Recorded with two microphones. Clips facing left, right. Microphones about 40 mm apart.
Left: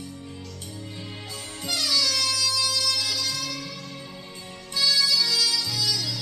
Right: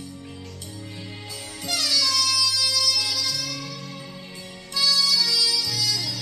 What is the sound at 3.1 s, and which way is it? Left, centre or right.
Music, left.